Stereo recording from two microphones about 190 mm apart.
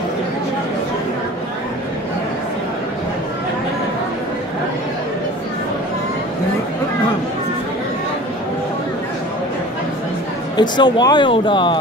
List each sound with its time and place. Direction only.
10.5 s speech: 20° left (ahead or behind)